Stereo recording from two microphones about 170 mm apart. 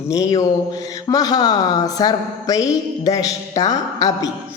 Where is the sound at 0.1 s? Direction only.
20° left (ahead or behind).